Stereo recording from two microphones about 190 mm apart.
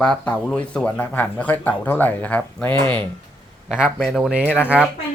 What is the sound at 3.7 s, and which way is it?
Speech, 5° right (ahead or behind).